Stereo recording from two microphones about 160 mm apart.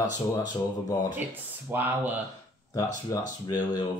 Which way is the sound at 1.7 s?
10° right (ahead or behind).